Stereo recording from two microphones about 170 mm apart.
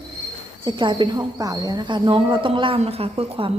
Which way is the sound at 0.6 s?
30° right (ahead or behind).